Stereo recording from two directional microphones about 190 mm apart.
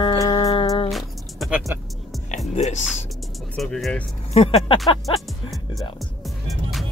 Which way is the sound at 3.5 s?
Centre (ahead or behind).